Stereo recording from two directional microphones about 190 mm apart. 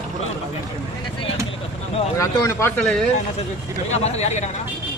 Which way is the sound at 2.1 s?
15° left (ahead or behind).